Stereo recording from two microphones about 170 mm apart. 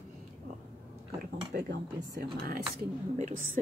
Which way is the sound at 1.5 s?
80° right.